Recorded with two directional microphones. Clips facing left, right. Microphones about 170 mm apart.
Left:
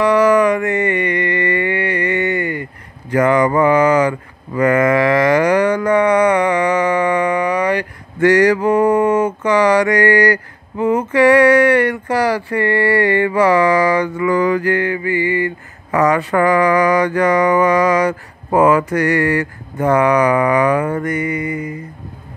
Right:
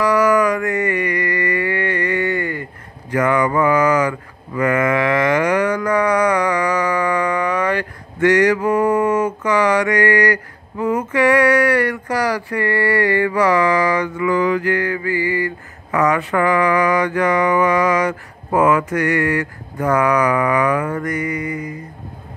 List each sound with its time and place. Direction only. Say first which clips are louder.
0.0 s music: left 3 dB; 30° left (ahead or behind)
3.1 s a sound: left 3 dB; 30° left (ahead or behind); by 7.8 s 15° left (ahead or behind)
8.2 s mantra: left 2 dB; 35° left (ahead or behind)
15.9 s mantra: left 3 dB; 35° left (ahead or behind)